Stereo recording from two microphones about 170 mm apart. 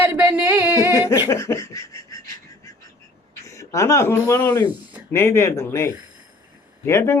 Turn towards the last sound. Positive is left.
turn(degrees=15)  # may be behind; listen again after turning